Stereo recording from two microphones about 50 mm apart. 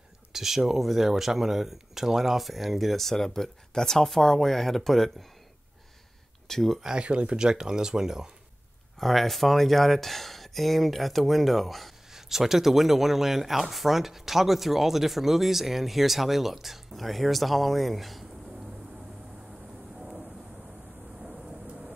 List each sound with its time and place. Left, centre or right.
0.3 s speech: centre
6.4 s speech: centre
6.8 s speech: centre
9.0 s speech: centre
20.0 s vehicle: centre
21.4 s vehicle: centre